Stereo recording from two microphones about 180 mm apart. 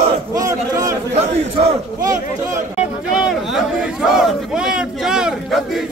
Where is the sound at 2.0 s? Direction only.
20° right (ahead or behind).